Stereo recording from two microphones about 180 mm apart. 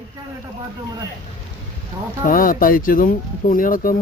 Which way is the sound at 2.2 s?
50° left (ahead or behind).